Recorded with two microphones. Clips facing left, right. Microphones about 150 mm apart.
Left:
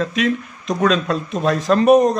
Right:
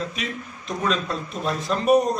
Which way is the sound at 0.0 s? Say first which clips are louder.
Left 11 dB; 85° left.